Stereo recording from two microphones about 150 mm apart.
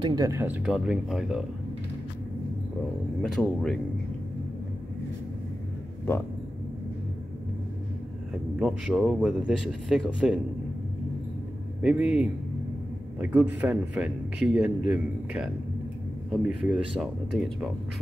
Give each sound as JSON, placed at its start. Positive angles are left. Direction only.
{"t": 0.0, "sound": "speech", "side_deg": -25}
{"t": 0.7, "sound": "speech", "side_deg": -5}
{"t": 3.2, "sound": "speech", "side_deg": 5}
{"t": 8.5, "sound": "speech", "side_deg": -5}
{"t": 11.8, "sound": "speech", "side_deg": -10}